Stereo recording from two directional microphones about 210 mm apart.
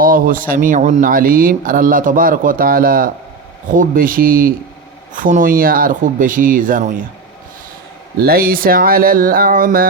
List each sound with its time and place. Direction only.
0.0 s speech: 40° right (ahead or behind)
8.2 s speech: 45° right (ahead or behind)